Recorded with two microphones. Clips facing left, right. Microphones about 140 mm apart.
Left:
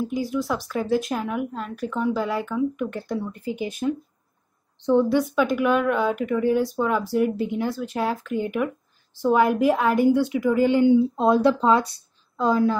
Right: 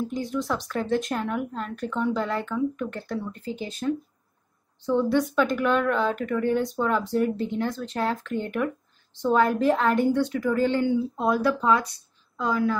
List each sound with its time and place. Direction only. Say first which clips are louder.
0.1 s a woman's voice: left 3 dB; 5° left (ahead or behind); by 12.7 s 30° left (ahead or behind)